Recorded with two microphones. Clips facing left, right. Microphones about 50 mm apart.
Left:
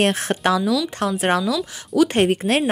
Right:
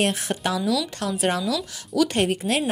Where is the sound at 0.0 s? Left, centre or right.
Left.